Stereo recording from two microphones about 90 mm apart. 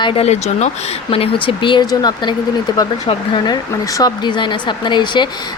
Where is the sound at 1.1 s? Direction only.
80° left; by 1.8 s 65° left (ahead or behind).